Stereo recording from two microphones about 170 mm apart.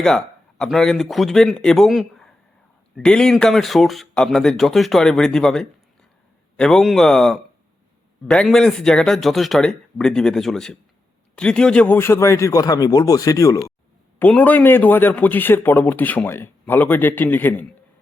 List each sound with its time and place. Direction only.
0.0 s speech: 5° left (ahead or behind)